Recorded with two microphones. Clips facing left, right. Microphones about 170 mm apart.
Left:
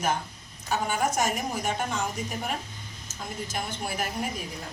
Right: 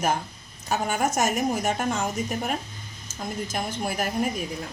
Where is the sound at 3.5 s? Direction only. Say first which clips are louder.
Right 2 dB; 45° right (ahead or behind).